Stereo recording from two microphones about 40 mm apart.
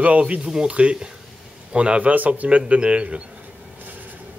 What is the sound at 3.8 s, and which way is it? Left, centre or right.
Train, right.